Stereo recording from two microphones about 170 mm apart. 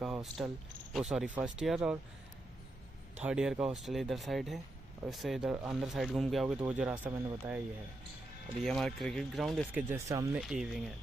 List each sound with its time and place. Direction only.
0.0 s speech: centre (ahead or behind)
3.2 s speech: 5° right (ahead or behind)
8.6 s speech: centre (ahead or behind)
9.8 s speech: 15° right (ahead or behind)
10.3 s speech: 5° right (ahead or behind)